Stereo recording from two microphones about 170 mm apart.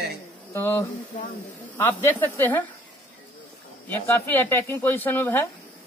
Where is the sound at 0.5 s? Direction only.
15° left (ahead or behind).